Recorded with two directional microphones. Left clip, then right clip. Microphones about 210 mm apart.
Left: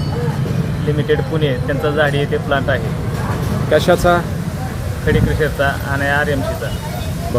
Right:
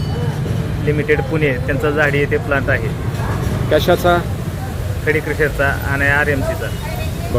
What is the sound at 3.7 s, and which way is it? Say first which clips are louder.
Speech: left 1 dB; centre (ahead or behind).